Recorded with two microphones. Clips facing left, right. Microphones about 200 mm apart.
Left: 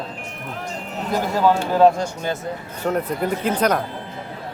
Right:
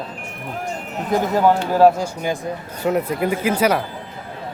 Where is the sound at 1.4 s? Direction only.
10° right (ahead or behind).